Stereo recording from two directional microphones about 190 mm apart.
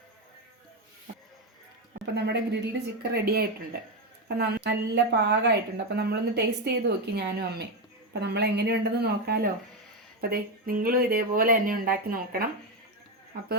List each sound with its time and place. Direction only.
2.0 s a woman's voice: 65° right (ahead or behind)